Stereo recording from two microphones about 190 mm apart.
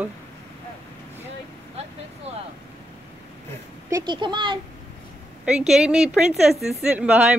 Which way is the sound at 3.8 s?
20° right (ahead or behind).